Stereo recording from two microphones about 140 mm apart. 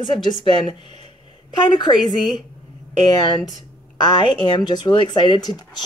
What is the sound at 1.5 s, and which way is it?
Speech, 30° left (ahead or behind).